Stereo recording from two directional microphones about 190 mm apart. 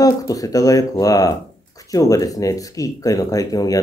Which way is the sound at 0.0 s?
20° left (ahead or behind).